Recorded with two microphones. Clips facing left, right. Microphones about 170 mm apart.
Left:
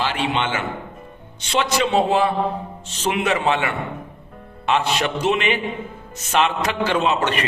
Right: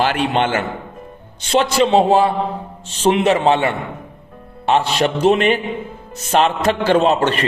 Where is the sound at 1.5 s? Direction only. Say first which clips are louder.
Right 6 dB; 35° right (ahead or behind).